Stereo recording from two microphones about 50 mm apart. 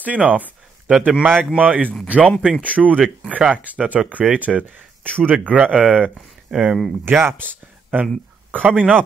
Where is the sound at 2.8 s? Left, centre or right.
Centre.